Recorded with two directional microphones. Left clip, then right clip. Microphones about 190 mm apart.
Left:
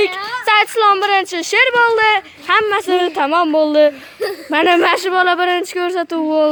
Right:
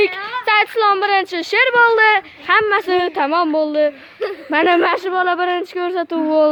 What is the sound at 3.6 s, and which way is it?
Speech, 25° left (ahead or behind).